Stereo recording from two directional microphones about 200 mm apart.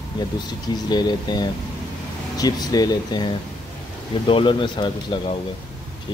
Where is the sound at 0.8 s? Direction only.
20° left (ahead or behind).